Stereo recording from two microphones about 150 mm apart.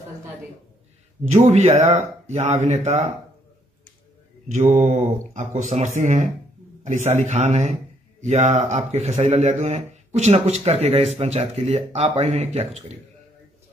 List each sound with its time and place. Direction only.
1.3 s speech: 45° right (ahead or behind)
1.7 s speech: 20° right (ahead or behind)
2.2 s speech: 50° right (ahead or behind)
4.5 s speech: 55° right (ahead or behind)